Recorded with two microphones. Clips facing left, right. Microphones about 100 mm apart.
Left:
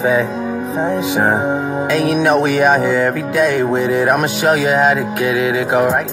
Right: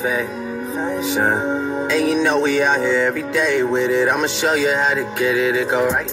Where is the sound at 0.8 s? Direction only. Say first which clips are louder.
Left 4 dB; 55° left (ahead or behind).